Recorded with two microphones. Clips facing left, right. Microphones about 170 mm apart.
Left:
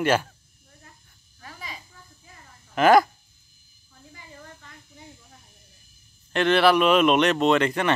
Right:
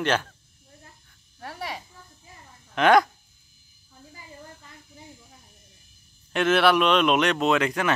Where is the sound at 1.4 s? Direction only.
70° right (ahead or behind).